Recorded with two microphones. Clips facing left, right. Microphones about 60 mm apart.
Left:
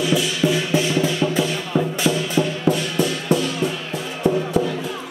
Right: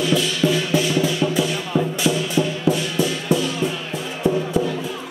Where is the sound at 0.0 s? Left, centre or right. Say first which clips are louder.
Even; centre; by 3.3 s left.